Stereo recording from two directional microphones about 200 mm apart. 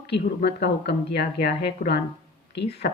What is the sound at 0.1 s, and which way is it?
A woman's voice, 55° left (ahead or behind).